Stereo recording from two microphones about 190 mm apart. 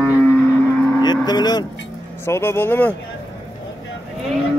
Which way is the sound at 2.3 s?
10° left (ahead or behind).